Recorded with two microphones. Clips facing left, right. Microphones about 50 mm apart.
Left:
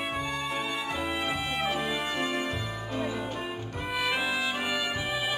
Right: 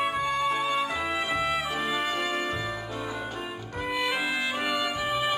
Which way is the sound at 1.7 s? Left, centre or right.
Right.